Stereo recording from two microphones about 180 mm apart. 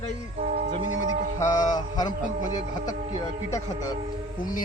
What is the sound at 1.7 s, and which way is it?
Speech, 20° left (ahead or behind).